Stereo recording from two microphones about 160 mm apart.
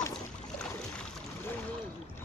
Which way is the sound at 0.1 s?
5° left (ahead or behind).